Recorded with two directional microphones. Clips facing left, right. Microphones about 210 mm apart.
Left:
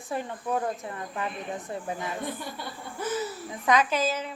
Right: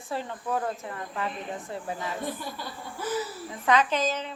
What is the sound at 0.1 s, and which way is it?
A woman's voice, 15° left (ahead or behind).